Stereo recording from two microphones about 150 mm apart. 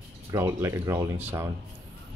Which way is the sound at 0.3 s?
20° right (ahead or behind).